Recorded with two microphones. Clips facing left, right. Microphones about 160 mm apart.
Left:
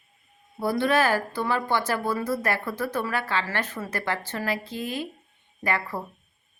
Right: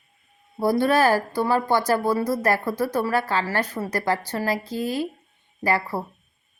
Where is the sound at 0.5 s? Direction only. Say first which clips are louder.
Right 3 dB; 40° right (ahead or behind).